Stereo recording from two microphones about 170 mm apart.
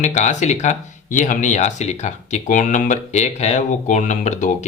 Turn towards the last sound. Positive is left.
turn(degrees=45)  # may be behind; listen again after turning